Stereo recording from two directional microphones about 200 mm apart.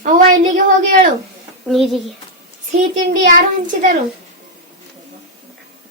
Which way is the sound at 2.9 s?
40° right (ahead or behind).